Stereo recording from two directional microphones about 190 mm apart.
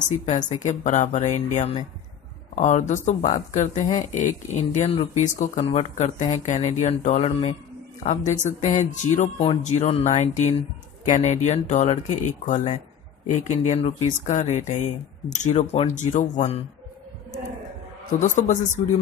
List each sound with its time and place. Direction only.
0.2 s speech: 35° left (ahead or behind)
18.2 s speech: 40° left (ahead or behind)